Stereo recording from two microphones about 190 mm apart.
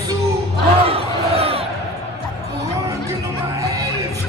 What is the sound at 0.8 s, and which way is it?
Crowd, 30° right (ahead or behind).